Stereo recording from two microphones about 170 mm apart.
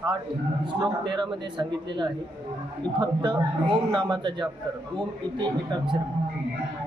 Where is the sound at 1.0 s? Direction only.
25° right (ahead or behind).